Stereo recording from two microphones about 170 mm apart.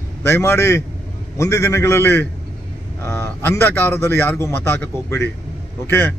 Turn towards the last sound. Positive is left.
turn(degrees=15)  # may be behind; listen again after turning